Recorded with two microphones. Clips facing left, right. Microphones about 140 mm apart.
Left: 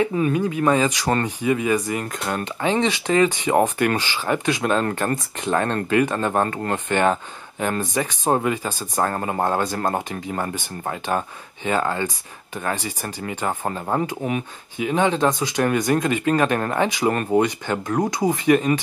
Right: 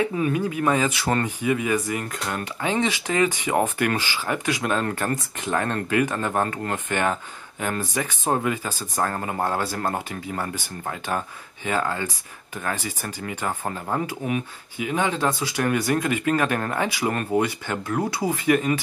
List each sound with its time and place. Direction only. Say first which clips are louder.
0.2 s speech: left 3 dB; 30° left (ahead or behind)